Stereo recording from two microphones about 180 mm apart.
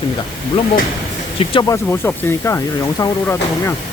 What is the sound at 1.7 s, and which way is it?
Speech, 15° left (ahead or behind).